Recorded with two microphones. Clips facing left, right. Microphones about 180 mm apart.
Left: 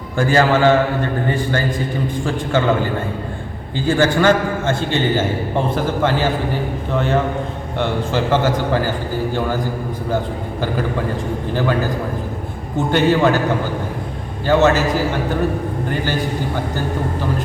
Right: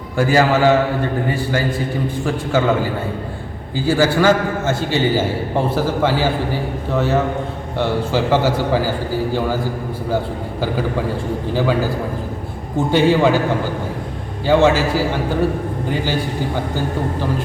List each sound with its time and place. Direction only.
0.2 s a man's voice: 10° right (ahead or behind)
11.5 s a man's voice: 10° right (ahead or behind)
14.4 s a man's voice: 10° right (ahead or behind)